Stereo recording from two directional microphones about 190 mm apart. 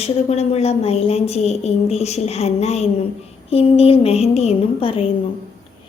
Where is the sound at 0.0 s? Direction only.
35° left (ahead or behind).